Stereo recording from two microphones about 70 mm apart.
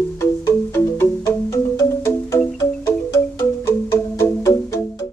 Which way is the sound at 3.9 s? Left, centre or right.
Left.